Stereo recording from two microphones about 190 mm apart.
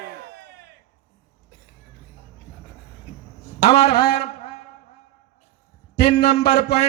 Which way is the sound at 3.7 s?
35° left (ahead or behind).